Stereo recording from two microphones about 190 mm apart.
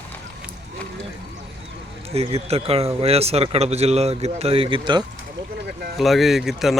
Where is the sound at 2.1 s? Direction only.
30° right (ahead or behind).